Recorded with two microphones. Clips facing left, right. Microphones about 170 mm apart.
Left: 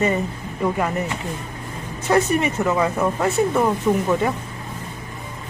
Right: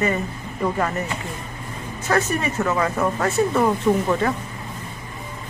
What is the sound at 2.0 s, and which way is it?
Speech, 15° left (ahead or behind).